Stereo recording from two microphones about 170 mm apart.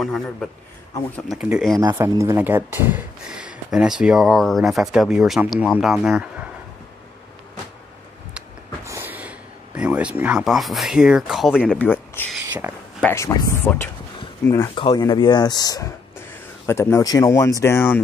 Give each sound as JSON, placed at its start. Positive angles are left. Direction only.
{"t": 0.0, "sound": "speech", "side_deg": 0}
{"t": 1.8, "sound": "speech", "side_deg": -20}
{"t": 8.8, "sound": "speech", "side_deg": -15}
{"t": 14.8, "sound": "speech", "side_deg": 30}